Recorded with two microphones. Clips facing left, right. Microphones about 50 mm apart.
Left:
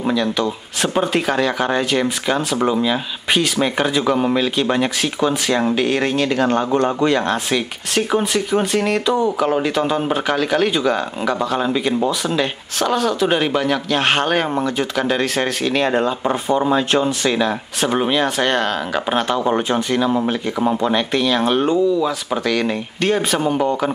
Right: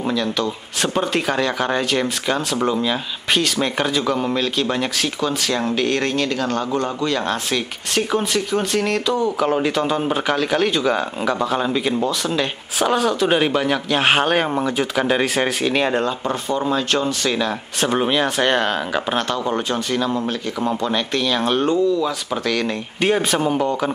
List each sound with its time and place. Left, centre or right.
0.0 s speech: centre
6.3 s a man's voice: left
7.1 s speech: centre
16.3 s speech: centre
19.0 s speech: centre
22.9 s speech: centre